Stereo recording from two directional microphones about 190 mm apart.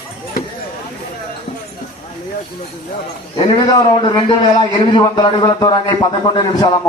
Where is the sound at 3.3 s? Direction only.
25° left (ahead or behind).